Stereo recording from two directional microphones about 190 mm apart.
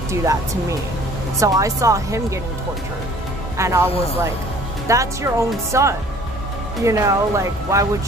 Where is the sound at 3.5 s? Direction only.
15° right (ahead or behind).